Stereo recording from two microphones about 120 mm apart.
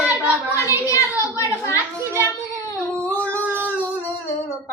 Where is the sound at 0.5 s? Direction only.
25° left (ahead or behind).